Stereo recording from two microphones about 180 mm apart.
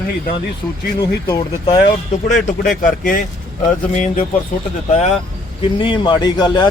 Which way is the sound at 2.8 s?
50° left (ahead or behind).